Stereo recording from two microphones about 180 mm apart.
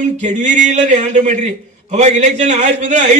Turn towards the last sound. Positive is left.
turn(degrees=-40)  # may be behind; listen again after turning